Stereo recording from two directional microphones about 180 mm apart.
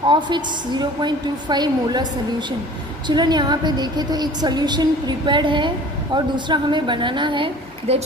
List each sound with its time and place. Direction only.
0.1 s a woman's voice: 25° right (ahead or behind)
3.1 s a woman's voice: 25° right (ahead or behind)